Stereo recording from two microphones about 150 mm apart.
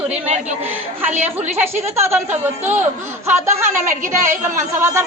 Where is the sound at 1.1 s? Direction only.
50° right (ahead or behind).